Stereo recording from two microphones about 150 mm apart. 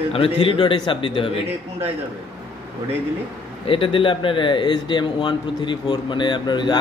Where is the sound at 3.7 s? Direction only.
35° left (ahead or behind).